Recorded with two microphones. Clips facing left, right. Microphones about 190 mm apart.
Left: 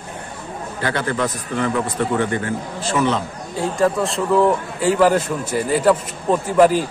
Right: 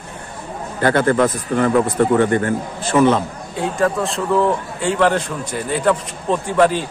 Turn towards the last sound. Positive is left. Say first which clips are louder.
# left 2 dB
turn(degrees=5)  # may be behind; listen again after turning